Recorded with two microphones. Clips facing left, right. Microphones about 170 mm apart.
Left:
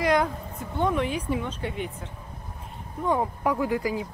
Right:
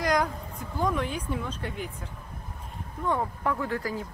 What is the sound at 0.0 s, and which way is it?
A woman's voice, 5° left (ahead or behind).